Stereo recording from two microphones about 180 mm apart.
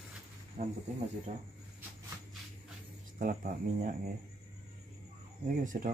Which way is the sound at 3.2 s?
50° right (ahead or behind).